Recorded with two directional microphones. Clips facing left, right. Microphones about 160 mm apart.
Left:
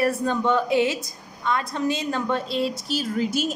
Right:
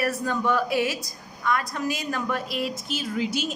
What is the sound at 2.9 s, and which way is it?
Speech, 40° left (ahead or behind).